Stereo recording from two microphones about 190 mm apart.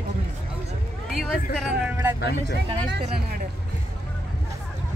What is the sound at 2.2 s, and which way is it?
Speech, 60° left (ahead or behind).